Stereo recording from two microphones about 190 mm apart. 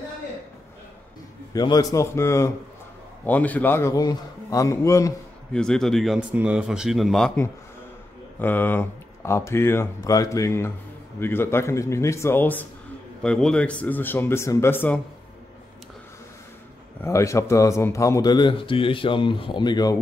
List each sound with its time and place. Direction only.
1.5 s speech: 20° left (ahead or behind)
5.5 s speech: 5° left (ahead or behind)
8.4 s speech: 10° left (ahead or behind)
17.0 s a man's voice: 15° left (ahead or behind)